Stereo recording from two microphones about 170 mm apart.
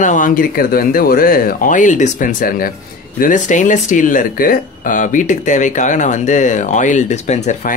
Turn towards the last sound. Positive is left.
turn(degrees=50)  # may be behind; listen again after turning